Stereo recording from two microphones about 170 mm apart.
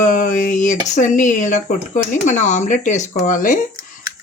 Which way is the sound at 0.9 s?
45° left (ahead or behind).